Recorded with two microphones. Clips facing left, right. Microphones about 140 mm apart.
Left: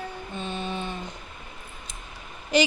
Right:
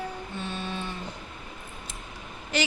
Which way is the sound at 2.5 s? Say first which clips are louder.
Left 6 dB; 15° left (ahead or behind).